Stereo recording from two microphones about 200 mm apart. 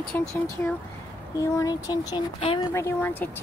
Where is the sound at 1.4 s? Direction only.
15° left (ahead or behind).